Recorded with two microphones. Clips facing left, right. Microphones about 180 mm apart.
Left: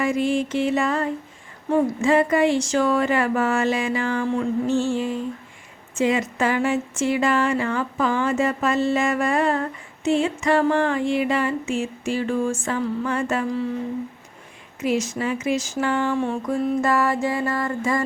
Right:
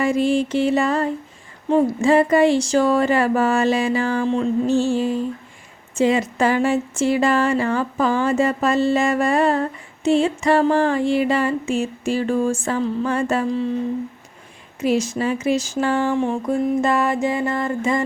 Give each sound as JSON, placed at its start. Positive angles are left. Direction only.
{"t": 0.0, "sound": "speech", "side_deg": -30}
{"t": 14.8, "sound": "speech", "side_deg": -35}
{"t": 16.1, "sound": "mantra", "side_deg": -15}
{"t": 16.6, "sound": "music", "side_deg": -20}